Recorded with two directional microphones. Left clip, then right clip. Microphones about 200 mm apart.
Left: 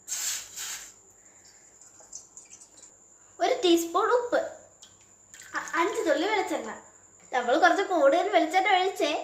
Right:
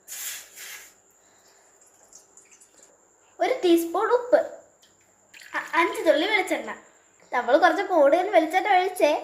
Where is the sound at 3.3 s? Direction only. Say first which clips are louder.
Right 2 dB; 10° right (ahead or behind).